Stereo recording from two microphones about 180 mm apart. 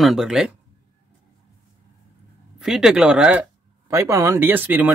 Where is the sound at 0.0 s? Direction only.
Centre (ahead or behind).